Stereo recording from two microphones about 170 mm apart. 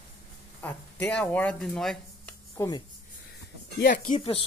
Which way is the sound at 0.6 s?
10° left (ahead or behind).